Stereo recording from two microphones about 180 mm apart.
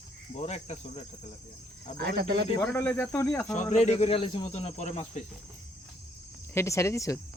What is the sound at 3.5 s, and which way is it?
Speech, 40° left (ahead or behind).